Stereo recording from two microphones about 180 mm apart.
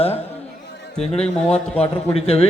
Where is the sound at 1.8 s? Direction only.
35° left (ahead or behind).